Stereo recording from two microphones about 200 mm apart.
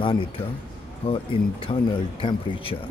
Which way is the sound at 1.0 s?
25° left (ahead or behind).